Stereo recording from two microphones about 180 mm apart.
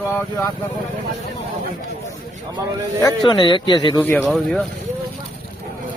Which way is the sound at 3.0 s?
25° left (ahead or behind).